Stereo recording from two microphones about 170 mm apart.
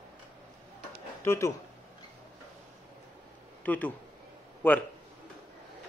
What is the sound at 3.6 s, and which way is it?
Speech, 10° left (ahead or behind).